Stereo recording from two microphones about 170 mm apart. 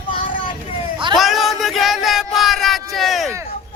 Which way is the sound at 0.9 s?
30° right (ahead or behind).